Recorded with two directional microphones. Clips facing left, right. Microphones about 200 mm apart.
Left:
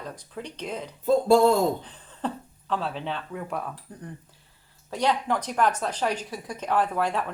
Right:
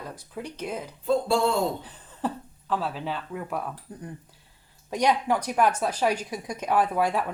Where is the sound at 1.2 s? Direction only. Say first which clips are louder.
Left 6 dB; 40° left (ahead or behind).